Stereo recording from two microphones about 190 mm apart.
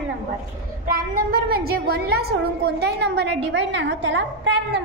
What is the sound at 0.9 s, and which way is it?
A woman's voice, 50° right (ahead or behind).